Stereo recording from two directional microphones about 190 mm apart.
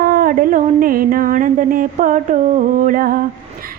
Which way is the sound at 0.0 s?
50° right (ahead or behind).